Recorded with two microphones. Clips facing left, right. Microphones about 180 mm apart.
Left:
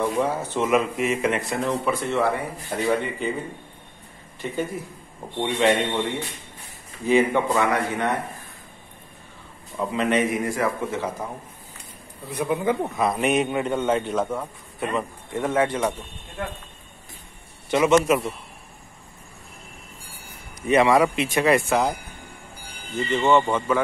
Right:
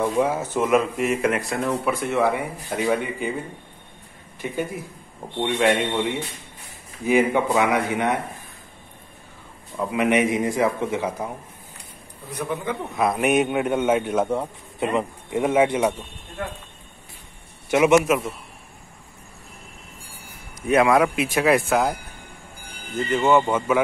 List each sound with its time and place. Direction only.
0.0 s a man's voice: 10° right (ahead or behind)
0.6 s speech: centre (ahead or behind)
5.4 s a man's voice: 10° right (ahead or behind)
9.8 s a man's voice: 15° right (ahead or behind)
12.3 s speech: 15° left (ahead or behind)
12.9 s a man's voice: 5° right (ahead or behind)
17.6 s a man's voice: 10° right (ahead or behind)
18.0 s speech: centre (ahead or behind)
20.6 s speech: centre (ahead or behind)